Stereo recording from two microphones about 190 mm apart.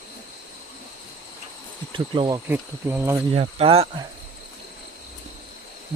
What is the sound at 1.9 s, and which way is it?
Insect, 25° right (ahead or behind).